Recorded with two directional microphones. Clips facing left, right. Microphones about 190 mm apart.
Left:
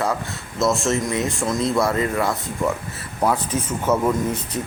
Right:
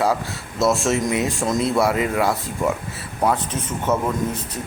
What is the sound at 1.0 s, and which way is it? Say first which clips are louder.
Speech: right 1 dB; 15° right (ahead or behind).